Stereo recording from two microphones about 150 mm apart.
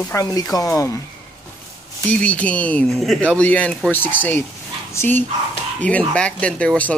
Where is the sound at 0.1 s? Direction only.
25° left (ahead or behind).